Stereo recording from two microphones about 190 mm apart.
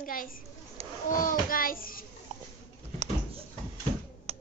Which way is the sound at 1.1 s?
45° left (ahead or behind).